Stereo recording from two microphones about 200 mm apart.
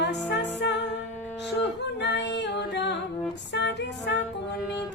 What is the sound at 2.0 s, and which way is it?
Singing, 60° left (ahead or behind).